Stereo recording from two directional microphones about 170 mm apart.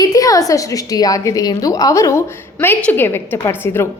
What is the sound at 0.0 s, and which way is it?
A woman's voice, 20° left (ahead or behind).